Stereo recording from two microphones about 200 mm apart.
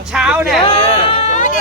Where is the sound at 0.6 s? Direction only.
25° left (ahead or behind).